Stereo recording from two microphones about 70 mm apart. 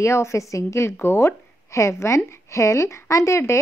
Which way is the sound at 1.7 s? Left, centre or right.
Left.